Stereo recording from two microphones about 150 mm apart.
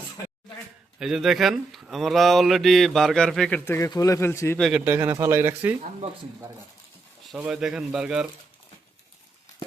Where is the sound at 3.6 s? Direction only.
15° left (ahead or behind).